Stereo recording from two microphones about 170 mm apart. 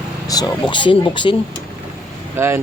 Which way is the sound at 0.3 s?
25° left (ahead or behind).